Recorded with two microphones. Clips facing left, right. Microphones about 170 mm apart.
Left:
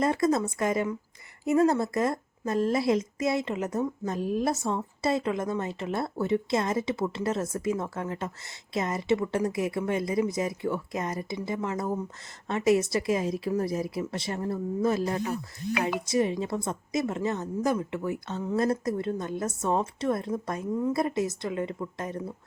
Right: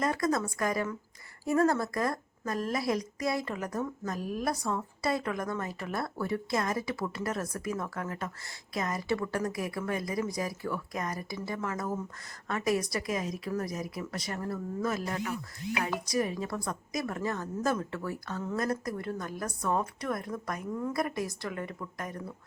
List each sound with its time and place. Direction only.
0.0 s a woman's voice: 25° left (ahead or behind)